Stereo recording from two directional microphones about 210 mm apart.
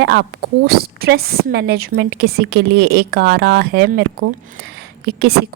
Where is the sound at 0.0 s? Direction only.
55° right (ahead or behind).